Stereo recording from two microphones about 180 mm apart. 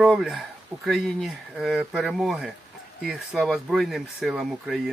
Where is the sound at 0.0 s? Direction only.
Centre (ahead or behind).